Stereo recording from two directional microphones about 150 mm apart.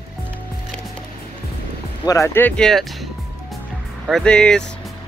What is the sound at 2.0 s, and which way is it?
Speech, 20° left (ahead or behind).